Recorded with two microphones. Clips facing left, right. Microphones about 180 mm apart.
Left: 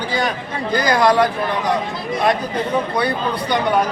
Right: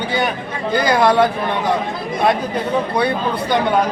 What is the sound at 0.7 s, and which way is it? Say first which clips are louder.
Speech: right 1 dB; 25° right (ahead or behind).